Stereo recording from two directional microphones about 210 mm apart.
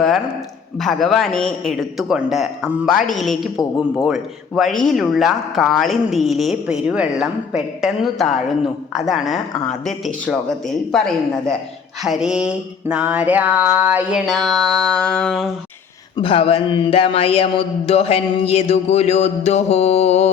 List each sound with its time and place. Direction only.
0.8 s mantra: centre (ahead or behind)
10.9 s mantra: 5° left (ahead or behind)
16.1 s speech: 25° left (ahead or behind)